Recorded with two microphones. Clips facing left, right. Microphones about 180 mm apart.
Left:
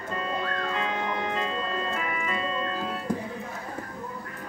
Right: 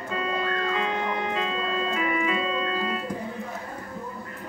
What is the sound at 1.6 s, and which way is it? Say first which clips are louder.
Organ: right 3 dB; 90° right.